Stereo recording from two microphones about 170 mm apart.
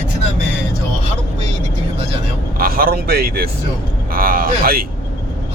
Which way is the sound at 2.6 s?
60° right (ahead or behind).